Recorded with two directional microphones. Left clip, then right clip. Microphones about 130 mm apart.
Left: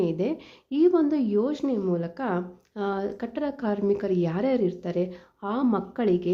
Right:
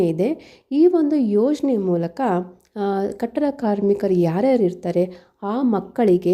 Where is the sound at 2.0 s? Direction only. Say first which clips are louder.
Right 8 dB; 50° right (ahead or behind).